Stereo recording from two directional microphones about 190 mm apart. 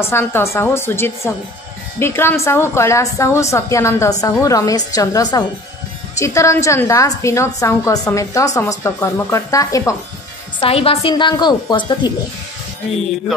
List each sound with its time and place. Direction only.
0.0 s a woman's voice: 10° left (ahead or behind)
10.6 s a woman's voice: 30° left (ahead or behind)